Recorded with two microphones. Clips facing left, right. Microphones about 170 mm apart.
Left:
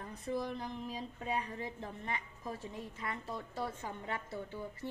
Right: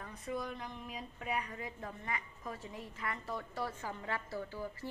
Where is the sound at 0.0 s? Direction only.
35° left (ahead or behind).